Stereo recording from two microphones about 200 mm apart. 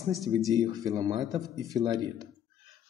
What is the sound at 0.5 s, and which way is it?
A man's voice, 20° right (ahead or behind).